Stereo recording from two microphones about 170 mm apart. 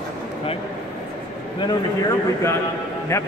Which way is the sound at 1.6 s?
25° left (ahead or behind).